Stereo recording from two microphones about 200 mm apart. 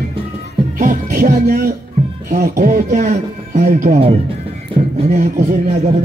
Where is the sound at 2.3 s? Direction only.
45° right (ahead or behind).